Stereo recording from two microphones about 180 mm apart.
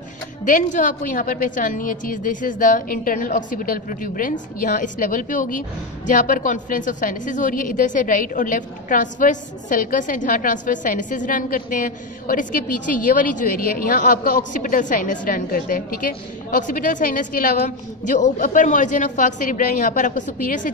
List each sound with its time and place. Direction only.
0.5 s a woman's voice: 45° left (ahead or behind)